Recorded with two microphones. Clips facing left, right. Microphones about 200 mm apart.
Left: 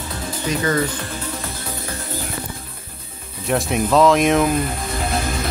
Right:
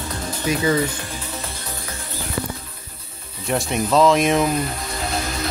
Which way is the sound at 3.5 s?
Centre (ahead or behind).